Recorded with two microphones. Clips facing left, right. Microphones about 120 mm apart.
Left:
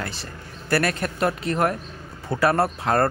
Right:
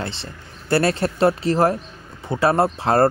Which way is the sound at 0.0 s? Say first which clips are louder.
Right 2 dB; 25° right (ahead or behind).